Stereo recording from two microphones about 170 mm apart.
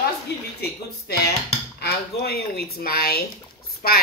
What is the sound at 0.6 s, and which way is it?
A woman's voice, 70° left (ahead or behind).